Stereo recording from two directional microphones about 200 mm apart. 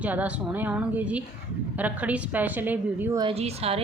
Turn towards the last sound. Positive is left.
turn(degrees=-30)  # may be behind; listen again after turning